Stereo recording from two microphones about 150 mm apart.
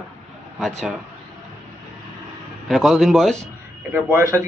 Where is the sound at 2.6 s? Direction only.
Centre (ahead or behind).